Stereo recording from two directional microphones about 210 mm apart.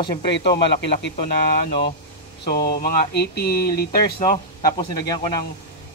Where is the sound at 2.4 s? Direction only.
50° left (ahead or behind).